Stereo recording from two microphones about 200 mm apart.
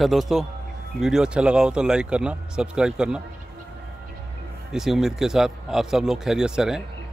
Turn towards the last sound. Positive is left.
turn(degrees=-5)  # may be behind; listen again after turning